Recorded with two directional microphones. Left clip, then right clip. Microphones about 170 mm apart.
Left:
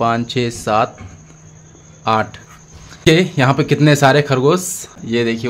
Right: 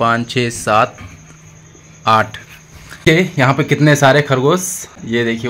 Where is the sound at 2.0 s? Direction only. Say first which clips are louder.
Right 4 dB; 5° left (ahead or behind).